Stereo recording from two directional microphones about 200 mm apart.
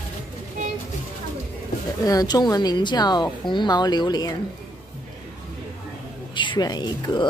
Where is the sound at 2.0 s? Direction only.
20° left (ahead or behind).